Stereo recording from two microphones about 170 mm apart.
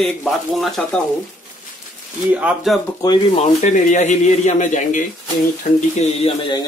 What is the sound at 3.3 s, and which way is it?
Speech, 45° left (ahead or behind).